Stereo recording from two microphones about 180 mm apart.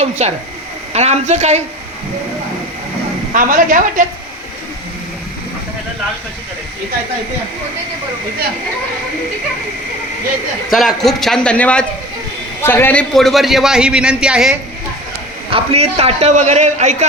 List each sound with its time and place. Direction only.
0.0 s a man's voice: 35° right (ahead or behind)
3.3 s a woman's voice: 50° right (ahead or behind)
10.7 s a man's voice: centre (ahead or behind)
15.4 s a man's voice: 30° right (ahead or behind)